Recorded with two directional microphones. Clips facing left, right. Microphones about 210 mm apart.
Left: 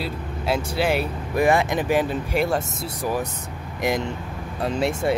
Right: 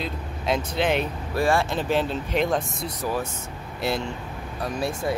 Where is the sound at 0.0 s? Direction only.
10° left (ahead or behind).